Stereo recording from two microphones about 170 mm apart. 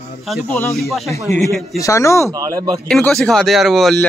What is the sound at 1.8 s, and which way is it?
Speech, 20° left (ahead or behind).